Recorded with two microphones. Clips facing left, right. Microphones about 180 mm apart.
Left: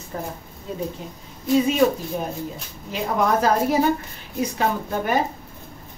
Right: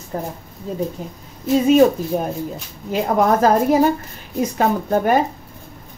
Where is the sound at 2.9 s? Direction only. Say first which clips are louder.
Right 5 dB; 45° right (ahead or behind).